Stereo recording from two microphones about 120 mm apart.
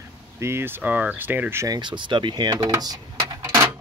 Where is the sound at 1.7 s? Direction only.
40° right (ahead or behind).